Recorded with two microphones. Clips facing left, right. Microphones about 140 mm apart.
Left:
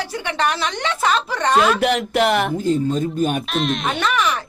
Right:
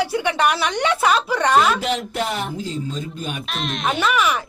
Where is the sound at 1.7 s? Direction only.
65° left (ahead or behind); by 3.4 s 50° left (ahead or behind).